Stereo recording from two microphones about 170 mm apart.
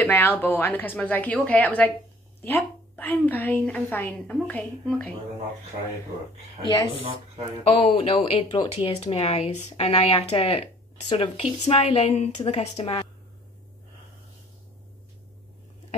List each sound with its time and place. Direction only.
0.0 s a woman's voice: 10° left (ahead or behind)
7.6 s speech: 35° left (ahead or behind)